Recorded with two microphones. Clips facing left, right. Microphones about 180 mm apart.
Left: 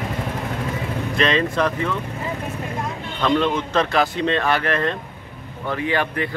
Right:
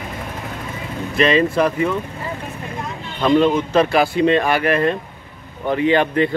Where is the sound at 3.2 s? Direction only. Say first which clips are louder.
Right 5 dB; 10° right (ahead or behind).